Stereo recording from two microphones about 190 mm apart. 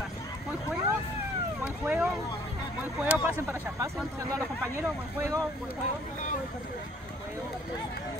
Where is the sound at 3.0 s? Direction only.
10° right (ahead or behind).